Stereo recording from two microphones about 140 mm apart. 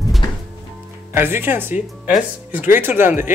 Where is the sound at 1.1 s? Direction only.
15° right (ahead or behind).